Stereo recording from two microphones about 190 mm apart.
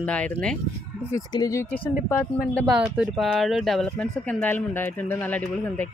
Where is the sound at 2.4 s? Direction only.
Centre (ahead or behind).